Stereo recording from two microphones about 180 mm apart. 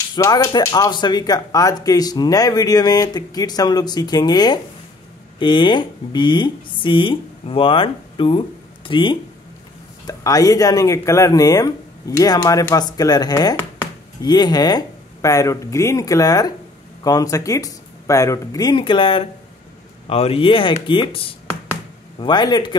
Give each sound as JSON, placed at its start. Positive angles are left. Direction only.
{"t": 0.1, "sound": "speech", "side_deg": 20}